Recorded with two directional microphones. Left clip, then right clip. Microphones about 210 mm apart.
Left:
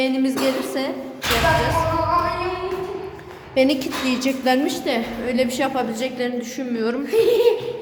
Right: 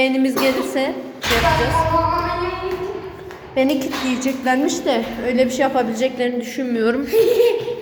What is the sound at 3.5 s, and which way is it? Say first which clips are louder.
A woman's voice: even; 20° left (ahead or behind).